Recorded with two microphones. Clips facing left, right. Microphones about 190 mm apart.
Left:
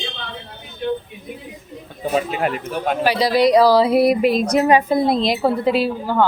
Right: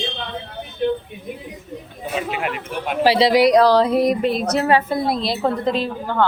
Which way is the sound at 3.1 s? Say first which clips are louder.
Right 5 dB; 25° right (ahead or behind).